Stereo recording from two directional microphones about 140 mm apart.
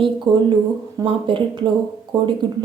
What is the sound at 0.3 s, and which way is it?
A woman's voice, 35° right (ahead or behind).